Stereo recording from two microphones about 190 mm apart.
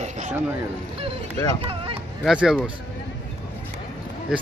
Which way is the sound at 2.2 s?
5° right (ahead or behind).